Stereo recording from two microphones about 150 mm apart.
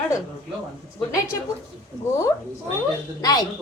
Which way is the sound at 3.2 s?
25° left (ahead or behind).